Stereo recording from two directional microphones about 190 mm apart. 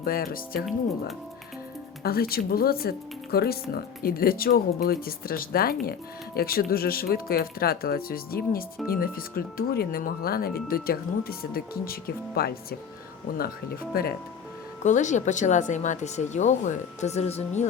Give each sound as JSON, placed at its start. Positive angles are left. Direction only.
{"t": 0.0, "sound": "speech", "side_deg": 50}
{"t": 2.0, "sound": "speech", "side_deg": 55}
{"t": 13.9, "sound": "speech", "side_deg": 55}
{"t": 14.8, "sound": "speech", "side_deg": 40}